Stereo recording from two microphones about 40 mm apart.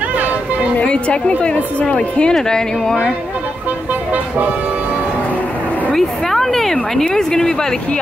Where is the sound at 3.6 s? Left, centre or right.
Right.